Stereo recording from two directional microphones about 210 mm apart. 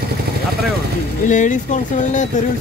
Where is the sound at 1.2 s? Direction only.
35° left (ahead or behind).